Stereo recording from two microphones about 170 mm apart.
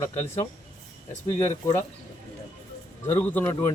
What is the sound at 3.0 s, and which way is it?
Speech, 15° left (ahead or behind).